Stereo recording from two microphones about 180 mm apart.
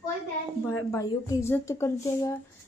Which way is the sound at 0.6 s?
15° left (ahead or behind).